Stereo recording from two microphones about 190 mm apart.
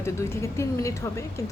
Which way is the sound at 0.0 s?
15° left (ahead or behind).